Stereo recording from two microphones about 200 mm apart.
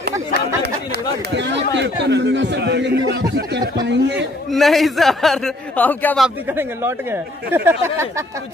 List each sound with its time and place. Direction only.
1.3 s a man's voice: 60° right (ahead or behind)
4.5 s a man's voice: centre (ahead or behind)
6.2 s speech: 10° right (ahead or behind)